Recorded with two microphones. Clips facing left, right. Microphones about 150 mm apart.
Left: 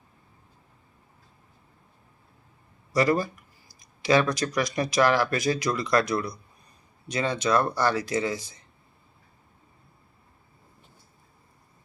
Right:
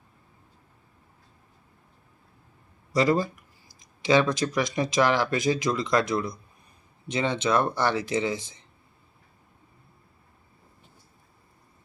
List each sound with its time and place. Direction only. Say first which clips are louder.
2.9 s speech: even; 20° right (ahead or behind)